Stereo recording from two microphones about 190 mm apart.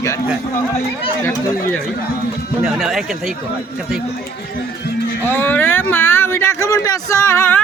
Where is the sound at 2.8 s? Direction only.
Centre (ahead or behind).